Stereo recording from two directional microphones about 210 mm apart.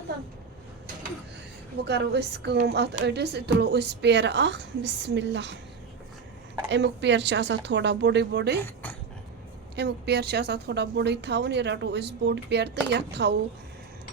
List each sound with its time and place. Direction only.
1.8 s a woman's voice: 55° right (ahead or behind)
6.7 s a woman's voice: 55° right (ahead or behind)
8.6 s speech: 10° left (ahead or behind)
9.7 s a woman's voice: 50° right (ahead or behind)